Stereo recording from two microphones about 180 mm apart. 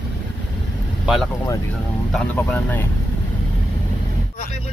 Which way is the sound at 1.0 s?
Centre (ahead or behind).